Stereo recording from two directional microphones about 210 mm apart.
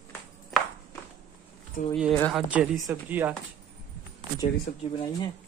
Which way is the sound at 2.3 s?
5° right (ahead or behind).